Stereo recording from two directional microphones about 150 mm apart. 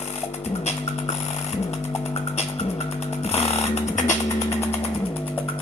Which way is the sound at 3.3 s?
45° left (ahead or behind).